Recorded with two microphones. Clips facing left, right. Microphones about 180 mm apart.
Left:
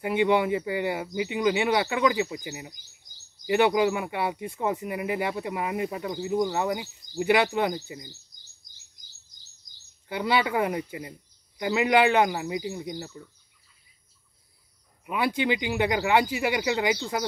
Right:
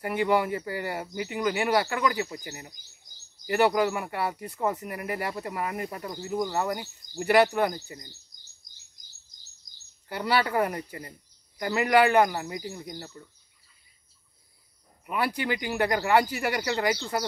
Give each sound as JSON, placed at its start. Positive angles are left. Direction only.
{"t": 0.0, "sound": "speech", "side_deg": 20}
{"t": 10.1, "sound": "speech", "side_deg": 15}
{"t": 15.3, "sound": "speech", "side_deg": 20}